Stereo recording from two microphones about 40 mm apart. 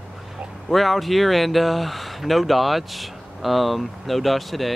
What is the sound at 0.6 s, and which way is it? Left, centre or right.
Speech, centre.